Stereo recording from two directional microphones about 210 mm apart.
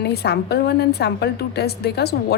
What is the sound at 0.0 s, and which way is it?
Speech, 50° left (ahead or behind).